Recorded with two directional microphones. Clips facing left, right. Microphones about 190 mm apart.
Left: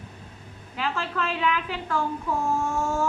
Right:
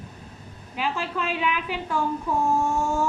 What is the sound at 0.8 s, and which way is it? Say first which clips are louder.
A woman's voice: right 1 dB; 15° right (ahead or behind).